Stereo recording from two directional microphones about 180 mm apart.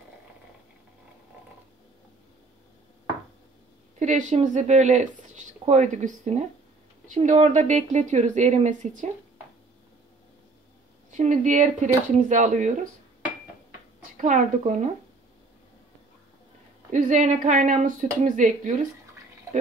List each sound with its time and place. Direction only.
4.0 s speech: 40° right (ahead or behind)
11.1 s speech: 45° right (ahead or behind)
14.2 s speech: 40° right (ahead or behind)
16.9 s speech: 40° right (ahead or behind)